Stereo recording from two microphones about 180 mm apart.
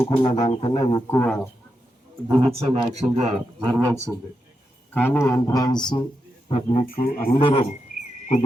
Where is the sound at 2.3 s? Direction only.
25° right (ahead or behind).